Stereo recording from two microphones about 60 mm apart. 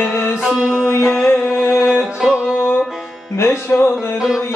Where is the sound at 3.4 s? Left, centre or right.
Left.